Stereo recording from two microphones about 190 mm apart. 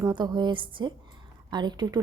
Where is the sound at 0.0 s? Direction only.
20° right (ahead or behind).